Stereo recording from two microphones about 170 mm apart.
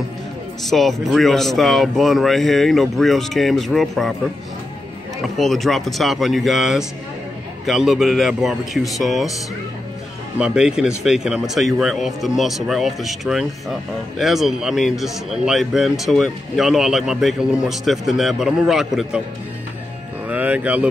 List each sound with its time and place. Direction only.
0.7 s a man's voice: centre (ahead or behind)
5.4 s a man's voice: centre (ahead or behind)
10.4 s a man's voice: 5° right (ahead or behind)
20.2 s cattle: 10° right (ahead or behind)